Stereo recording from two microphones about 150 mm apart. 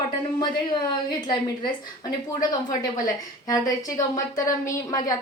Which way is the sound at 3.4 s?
25° left (ahead or behind).